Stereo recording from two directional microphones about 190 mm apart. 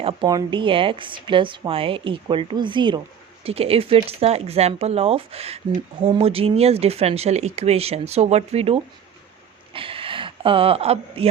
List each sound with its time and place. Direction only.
0.0 s a woman's voice: 25° right (ahead or behind)